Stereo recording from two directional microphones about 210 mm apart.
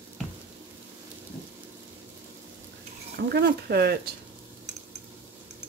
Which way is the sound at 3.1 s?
55° right (ahead or behind).